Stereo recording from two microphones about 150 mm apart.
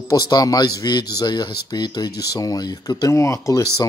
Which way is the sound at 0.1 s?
25° left (ahead or behind).